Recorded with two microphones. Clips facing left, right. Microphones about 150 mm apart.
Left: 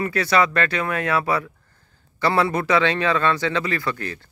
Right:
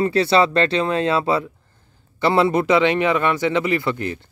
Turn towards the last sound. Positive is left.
turn(degrees=-20)  # may be behind; listen again after turning